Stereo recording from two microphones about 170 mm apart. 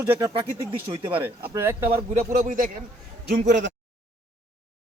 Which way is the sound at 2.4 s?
50° right (ahead or behind).